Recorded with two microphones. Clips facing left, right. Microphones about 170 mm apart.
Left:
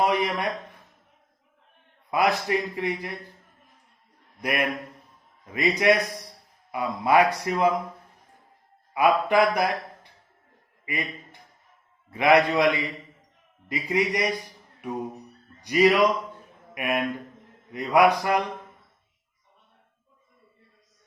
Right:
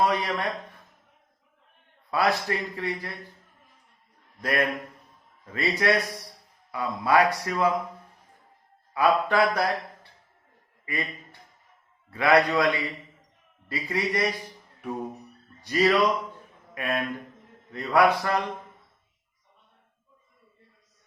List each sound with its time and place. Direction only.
0.0 s a man's voice: 15° left (ahead or behind)
2.0 s a man's voice: 15° left (ahead or behind)
4.4 s a man's voice: 15° left (ahead or behind)
8.9 s a man's voice: 15° left (ahead or behind)
15.6 s a man's voice: 15° left (ahead or behind)